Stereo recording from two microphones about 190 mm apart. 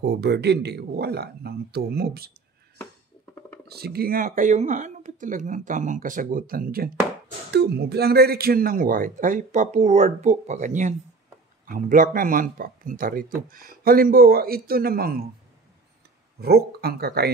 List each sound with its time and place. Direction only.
0.0 s speech: 60° right (ahead or behind)
3.6 s speech: 55° right (ahead or behind)
16.3 s speech: 55° right (ahead or behind)